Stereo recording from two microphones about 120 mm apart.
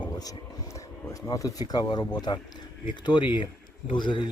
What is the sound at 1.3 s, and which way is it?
Speech, 30° left (ahead or behind).